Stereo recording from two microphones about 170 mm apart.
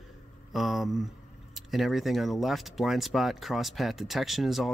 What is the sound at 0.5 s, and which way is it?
Speech, centre (ahead or behind).